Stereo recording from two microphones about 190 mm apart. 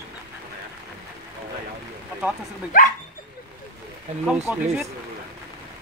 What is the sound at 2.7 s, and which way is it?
Speech, 45° left (ahead or behind).